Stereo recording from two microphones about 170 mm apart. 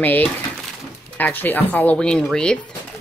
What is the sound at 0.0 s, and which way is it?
Speech, 10° left (ahead or behind).